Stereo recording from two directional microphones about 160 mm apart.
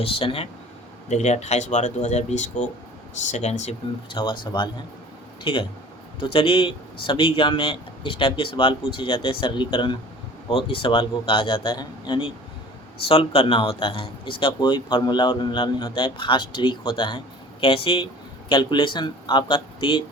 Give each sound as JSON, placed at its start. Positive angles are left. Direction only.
{"t": 0.0, "sound": "a man's voice", "side_deg": 35}
{"t": 1.0, "sound": "speech", "side_deg": 45}
{"t": 4.1, "sound": "a man's voice", "side_deg": 30}